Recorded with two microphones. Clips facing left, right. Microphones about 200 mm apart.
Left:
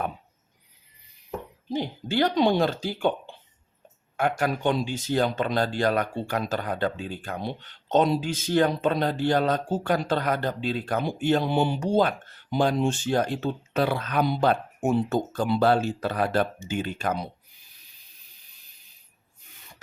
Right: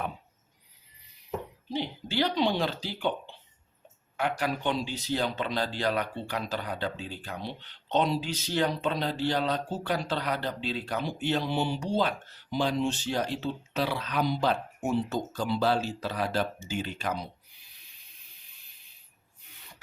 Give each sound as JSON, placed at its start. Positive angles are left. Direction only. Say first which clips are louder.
{"t": 1.7, "sound": "speech", "louder": "left 4 dB", "side_deg": 50}